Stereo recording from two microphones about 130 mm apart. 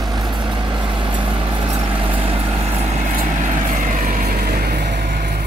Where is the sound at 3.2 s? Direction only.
85° right.